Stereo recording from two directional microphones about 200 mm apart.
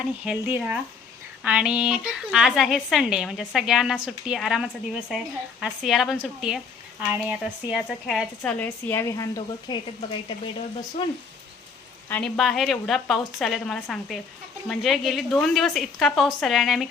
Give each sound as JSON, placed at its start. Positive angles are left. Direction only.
{"t": 0.0, "sound": "speech", "side_deg": -5}
{"t": 8.4, "sound": "a woman's voice", "side_deg": 10}
{"t": 12.0, "sound": "speech", "side_deg": 5}